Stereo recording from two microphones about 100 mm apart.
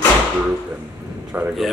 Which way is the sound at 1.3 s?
15° right (ahead or behind).